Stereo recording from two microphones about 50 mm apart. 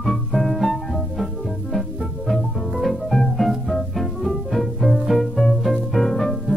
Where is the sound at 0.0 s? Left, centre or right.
Centre.